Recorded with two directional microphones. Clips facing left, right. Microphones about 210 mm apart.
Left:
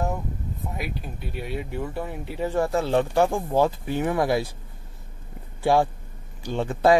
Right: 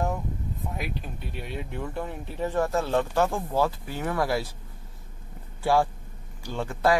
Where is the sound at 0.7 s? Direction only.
5° left (ahead or behind).